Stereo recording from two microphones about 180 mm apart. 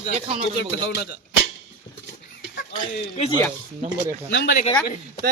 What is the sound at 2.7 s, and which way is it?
Speech, 40° left (ahead or behind).